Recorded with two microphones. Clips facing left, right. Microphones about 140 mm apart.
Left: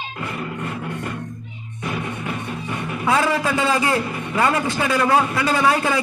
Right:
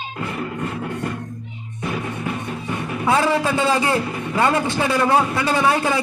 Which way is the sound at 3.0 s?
30° right (ahead or behind).